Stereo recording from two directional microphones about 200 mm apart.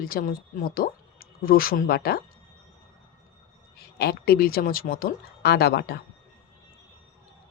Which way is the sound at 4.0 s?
50° left (ahead or behind).